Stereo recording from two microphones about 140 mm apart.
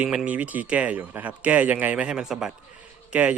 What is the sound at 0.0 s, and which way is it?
Speech, 10° right (ahead or behind).